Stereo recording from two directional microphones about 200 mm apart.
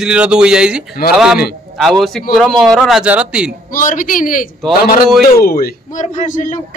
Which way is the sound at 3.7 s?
40° left (ahead or behind).